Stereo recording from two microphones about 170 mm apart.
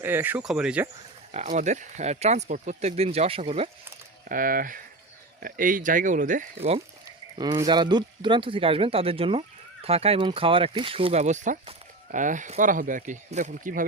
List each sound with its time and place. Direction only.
0.0 s speech: 10° right (ahead or behind)
1.3 s speech: 40° right (ahead or behind)
4.3 s speech: 55° right (ahead or behind); by 6.8 s 35° right (ahead or behind)
7.3 s speech: 25° right (ahead or behind); by 13.8 s 50° right (ahead or behind)